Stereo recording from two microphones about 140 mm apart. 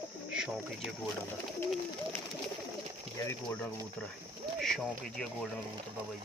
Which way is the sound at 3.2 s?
20° left (ahead or behind).